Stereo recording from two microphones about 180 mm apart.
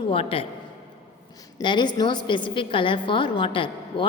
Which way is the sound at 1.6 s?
25° left (ahead or behind).